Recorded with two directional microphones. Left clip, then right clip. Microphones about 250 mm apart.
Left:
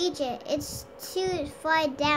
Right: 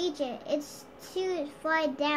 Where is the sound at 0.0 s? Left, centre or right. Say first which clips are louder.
Left 3 dB; centre.